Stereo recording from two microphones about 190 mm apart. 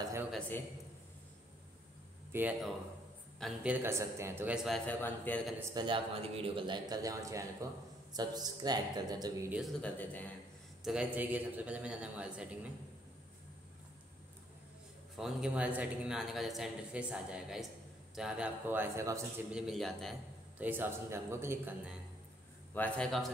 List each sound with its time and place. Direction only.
2.3 s speech: 10° right (ahead or behind)
4.6 s a man's voice: 5° left (ahead or behind)
5.6 s speech: 15° right (ahead or behind)
5.9 s a man's voice: 30° right (ahead or behind)
9.8 s a man's voice: 5° left (ahead or behind)
10.8 s a man's voice: 5° right (ahead or behind)
15.1 s a man's voice: centre (ahead or behind)
19.5 s a man's voice: centre (ahead or behind)
20.6 s speech: 10° right (ahead or behind)
22.8 s a man's voice: 5° left (ahead or behind)